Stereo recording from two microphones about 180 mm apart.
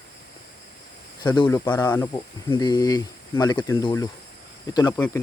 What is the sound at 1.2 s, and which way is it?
Speech, 25° left (ahead or behind).